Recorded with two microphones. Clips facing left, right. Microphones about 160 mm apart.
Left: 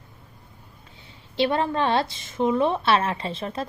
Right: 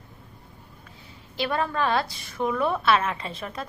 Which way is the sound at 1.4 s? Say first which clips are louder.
Left 4 dB; 25° left (ahead or behind).